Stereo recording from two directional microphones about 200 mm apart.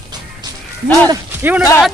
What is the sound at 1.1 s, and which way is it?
Speech, 10° right (ahead or behind).